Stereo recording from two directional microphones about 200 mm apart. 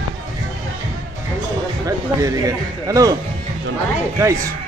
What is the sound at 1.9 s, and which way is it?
Speech, 15° right (ahead or behind).